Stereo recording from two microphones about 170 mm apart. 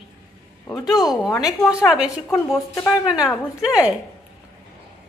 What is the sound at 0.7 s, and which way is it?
Speech, 20° left (ahead or behind).